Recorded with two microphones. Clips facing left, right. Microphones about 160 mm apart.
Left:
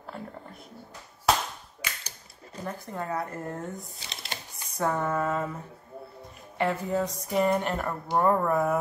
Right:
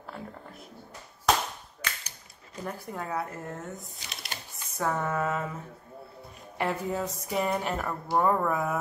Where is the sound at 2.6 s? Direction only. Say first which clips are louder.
Left 1 dB; 5° right (ahead or behind).